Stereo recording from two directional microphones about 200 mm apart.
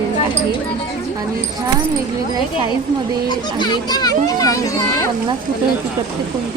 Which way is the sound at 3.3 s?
20° left (ahead or behind).